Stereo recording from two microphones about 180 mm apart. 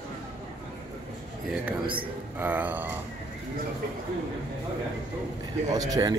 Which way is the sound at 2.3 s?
10° right (ahead or behind).